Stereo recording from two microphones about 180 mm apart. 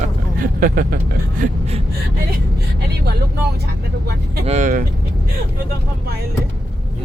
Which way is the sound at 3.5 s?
60° right (ahead or behind).